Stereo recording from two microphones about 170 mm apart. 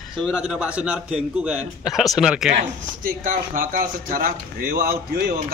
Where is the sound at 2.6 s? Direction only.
55° right (ahead or behind).